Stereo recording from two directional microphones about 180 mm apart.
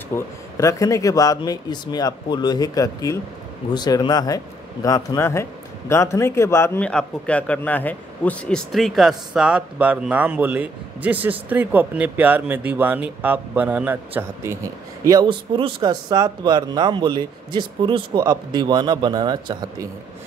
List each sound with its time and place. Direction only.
0.1 s a man's voice: 20° left (ahead or behind); by 14.6 s 10° right (ahead or behind)
15.0 s speech: 25° right (ahead or behind)